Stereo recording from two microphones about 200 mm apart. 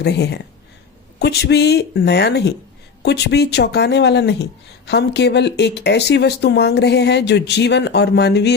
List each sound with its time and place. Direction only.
0.0 s speech: 55° left (ahead or behind)